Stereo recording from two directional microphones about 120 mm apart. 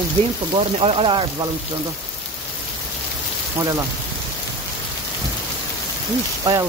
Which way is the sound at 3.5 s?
30° right (ahead or behind).